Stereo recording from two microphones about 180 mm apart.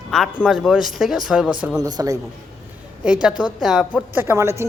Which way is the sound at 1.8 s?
20° right (ahead or behind).